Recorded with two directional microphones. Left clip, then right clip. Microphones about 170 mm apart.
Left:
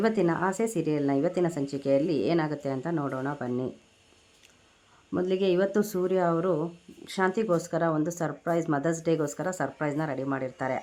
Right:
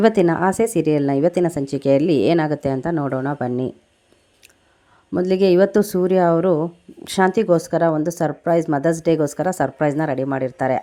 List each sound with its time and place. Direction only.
0.0 s a woman's voice: 40° right (ahead or behind)
5.1 s a woman's voice: 35° right (ahead or behind)